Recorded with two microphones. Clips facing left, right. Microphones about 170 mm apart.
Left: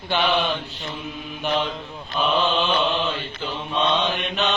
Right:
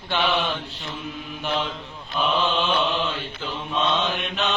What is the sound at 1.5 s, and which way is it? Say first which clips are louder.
Chant: left 3 dB; 5° right (ahead or behind).